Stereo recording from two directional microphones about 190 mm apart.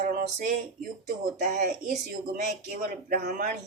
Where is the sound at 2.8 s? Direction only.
50° right (ahead or behind).